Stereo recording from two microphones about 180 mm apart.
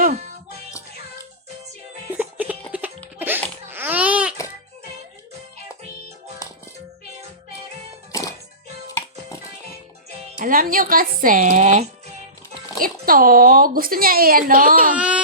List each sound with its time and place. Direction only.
0.0 s music: 40° right (ahead or behind)
2.1 s music: 10° right (ahead or behind)
3.7 s babbling: 10° right (ahead or behind)
6.4 s music: 20° left (ahead or behind)
8.1 s music: 15° left (ahead or behind)
10.2 s speech: 45° right (ahead or behind)
14.9 s speech: 5° right (ahead or behind)